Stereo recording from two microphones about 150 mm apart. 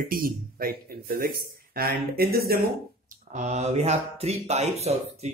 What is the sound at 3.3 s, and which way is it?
Speech, 50° right (ahead or behind).